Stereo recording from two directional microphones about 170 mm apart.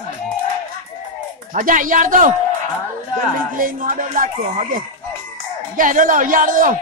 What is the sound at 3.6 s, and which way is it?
Speech, 55° right (ahead or behind).